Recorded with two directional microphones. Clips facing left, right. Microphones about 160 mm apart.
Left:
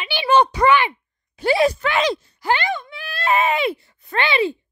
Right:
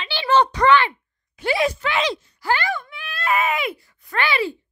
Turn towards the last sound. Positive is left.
turn(degrees=25)  # may be behind; listen again after turning